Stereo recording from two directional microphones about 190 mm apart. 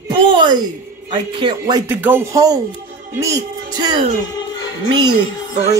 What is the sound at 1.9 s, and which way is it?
A man's voice, 10° right (ahead or behind).